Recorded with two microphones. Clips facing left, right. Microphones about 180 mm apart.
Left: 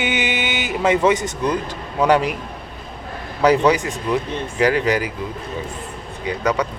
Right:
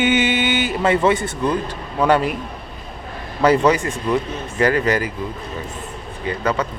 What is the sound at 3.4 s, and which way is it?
Speech, 10° left (ahead or behind).